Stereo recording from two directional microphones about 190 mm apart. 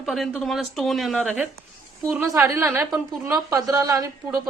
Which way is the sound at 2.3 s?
15° right (ahead or behind).